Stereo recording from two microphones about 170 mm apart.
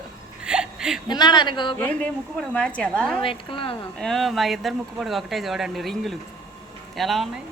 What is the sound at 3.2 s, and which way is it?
Speech, 30° left (ahead or behind).